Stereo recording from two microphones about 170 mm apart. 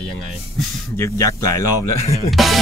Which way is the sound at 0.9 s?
15° left (ahead or behind).